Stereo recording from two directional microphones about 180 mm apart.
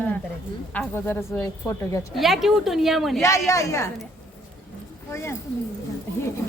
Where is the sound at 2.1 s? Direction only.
Centre (ahead or behind).